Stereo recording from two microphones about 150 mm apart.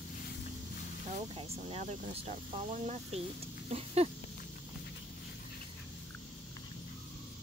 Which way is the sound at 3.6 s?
45° right (ahead or behind).